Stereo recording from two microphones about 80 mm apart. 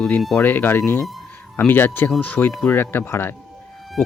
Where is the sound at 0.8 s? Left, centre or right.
Left.